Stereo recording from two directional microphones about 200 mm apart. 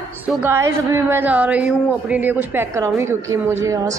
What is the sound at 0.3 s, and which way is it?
A woman's voice, 10° right (ahead or behind).